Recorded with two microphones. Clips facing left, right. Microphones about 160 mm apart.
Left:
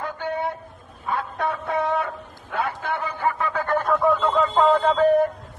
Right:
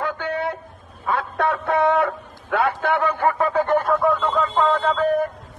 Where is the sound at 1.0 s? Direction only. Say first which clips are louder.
Right 4 dB; 75° right (ahead or behind); by 3.5 s 50° right (ahead or behind).